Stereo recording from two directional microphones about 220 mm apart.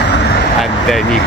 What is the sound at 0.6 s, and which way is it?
Speech, centre (ahead or behind).